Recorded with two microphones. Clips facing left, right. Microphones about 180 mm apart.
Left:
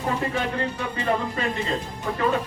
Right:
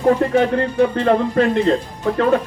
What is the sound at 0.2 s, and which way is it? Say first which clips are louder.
Speech: right 10 dB; 60° right (ahead or behind).